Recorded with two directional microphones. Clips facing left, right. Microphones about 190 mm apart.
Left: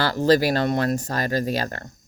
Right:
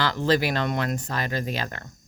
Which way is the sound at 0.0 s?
40° left (ahead or behind).